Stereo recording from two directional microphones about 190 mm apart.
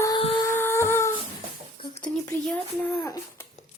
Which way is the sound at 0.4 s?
15° left (ahead or behind).